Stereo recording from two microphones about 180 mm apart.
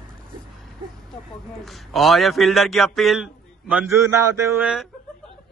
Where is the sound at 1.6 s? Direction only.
Centre (ahead or behind).